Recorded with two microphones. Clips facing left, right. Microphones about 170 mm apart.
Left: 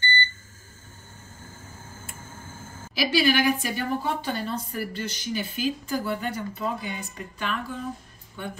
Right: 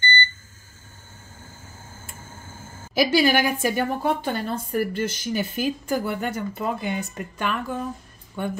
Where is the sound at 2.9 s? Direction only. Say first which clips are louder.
Right 3 dB; 50° right (ahead or behind).